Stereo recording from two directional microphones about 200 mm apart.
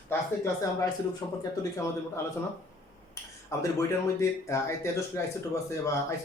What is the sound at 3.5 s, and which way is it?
Speech, 15° left (ahead or behind).